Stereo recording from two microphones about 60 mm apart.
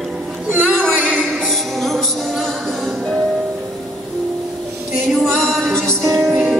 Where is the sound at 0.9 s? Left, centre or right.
Centre.